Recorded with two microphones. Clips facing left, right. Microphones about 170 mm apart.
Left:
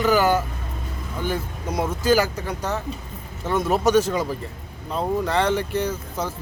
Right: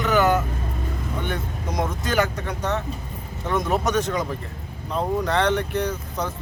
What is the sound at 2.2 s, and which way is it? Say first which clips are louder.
Speech: even; 5° left (ahead or behind).